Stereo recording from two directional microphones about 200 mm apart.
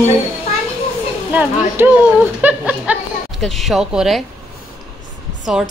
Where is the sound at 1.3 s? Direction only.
10° right (ahead or behind).